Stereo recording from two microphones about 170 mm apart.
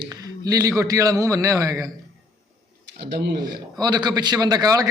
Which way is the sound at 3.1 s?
80° right.